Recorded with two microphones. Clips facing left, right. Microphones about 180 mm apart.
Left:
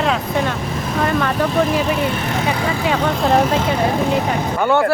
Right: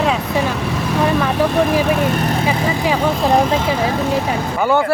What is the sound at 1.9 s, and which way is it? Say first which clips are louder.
Speech: right 3 dB; 45° right (ahead or behind).